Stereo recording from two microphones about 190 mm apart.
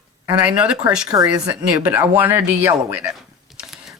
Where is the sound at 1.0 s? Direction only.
20° right (ahead or behind).